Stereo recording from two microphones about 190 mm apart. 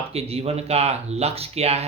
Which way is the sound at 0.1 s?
30° right (ahead or behind).